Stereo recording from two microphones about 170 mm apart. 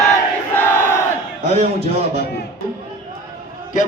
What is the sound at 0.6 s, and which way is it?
Crowd, 15° left (ahead or behind).